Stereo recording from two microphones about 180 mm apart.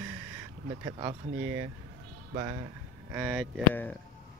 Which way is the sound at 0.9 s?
20° right (ahead or behind).